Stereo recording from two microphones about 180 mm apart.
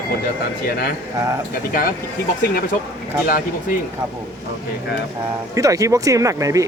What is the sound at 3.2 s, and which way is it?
Speech, 55° left (ahead or behind).